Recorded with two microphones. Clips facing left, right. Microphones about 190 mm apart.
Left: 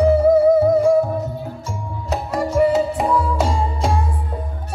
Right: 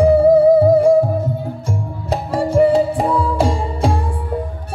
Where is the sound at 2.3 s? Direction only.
30° right (ahead or behind).